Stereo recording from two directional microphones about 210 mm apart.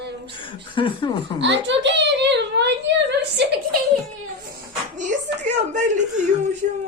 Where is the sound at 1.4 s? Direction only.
60° right (ahead or behind).